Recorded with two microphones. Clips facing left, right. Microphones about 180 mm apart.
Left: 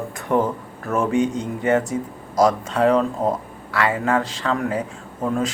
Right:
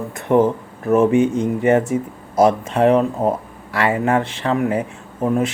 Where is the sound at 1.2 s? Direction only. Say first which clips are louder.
Right 5 dB; 10° right (ahead or behind).